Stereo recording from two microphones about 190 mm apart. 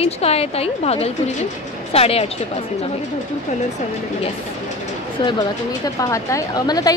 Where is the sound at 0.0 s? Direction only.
30° left (ahead or behind).